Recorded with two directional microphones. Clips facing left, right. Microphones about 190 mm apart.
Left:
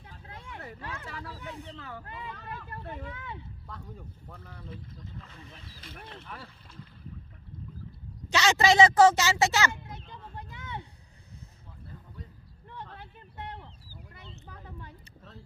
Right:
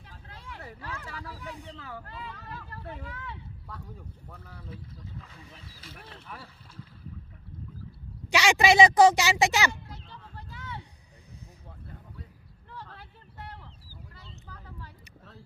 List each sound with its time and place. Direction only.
0.3 s vehicle: 20° left (ahead or behind)
0.8 s speech: 20° left (ahead or behind)
1.0 s speech: 10° right (ahead or behind)
3.7 s speech: 10° right (ahead or behind)
8.3 s speech: 10° right (ahead or behind)
9.8 s vehicle: 20° left (ahead or behind)
12.7 s a sound: 20° left (ahead or behind)